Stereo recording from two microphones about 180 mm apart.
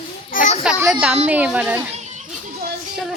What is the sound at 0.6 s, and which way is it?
A woman's voice, 5° right (ahead or behind).